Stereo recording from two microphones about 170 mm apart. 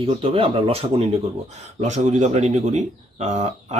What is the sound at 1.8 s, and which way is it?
Speech, 45° right (ahead or behind).